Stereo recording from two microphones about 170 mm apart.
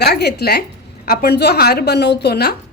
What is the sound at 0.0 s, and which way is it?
A woman's voice, 75° left (ahead or behind).